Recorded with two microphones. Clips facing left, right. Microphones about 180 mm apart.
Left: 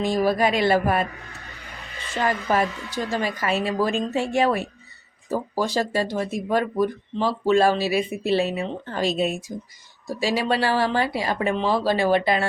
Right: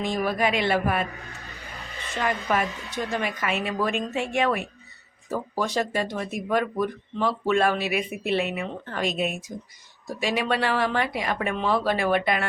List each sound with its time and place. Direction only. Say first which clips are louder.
0.0 s speech: left 4 dB; 35° left (ahead or behind)
2.1 s speech: left 3 dB; 35° left (ahead or behind)